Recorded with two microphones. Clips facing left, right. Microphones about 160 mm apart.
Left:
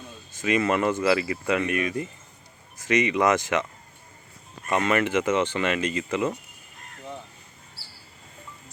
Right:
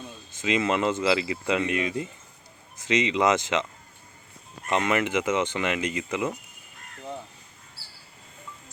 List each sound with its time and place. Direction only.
0.4 s speech: 20° right (ahead or behind)
4.7 s speech: 15° right (ahead or behind)